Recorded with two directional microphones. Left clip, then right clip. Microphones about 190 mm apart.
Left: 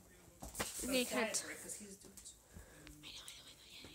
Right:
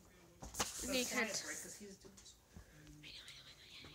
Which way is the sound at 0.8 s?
25° left (ahead or behind).